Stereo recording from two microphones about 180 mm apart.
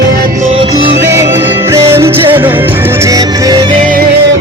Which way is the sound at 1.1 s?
15° right (ahead or behind).